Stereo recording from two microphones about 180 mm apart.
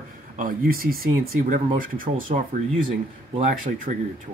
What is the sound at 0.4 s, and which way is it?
Speech, 50° right (ahead or behind).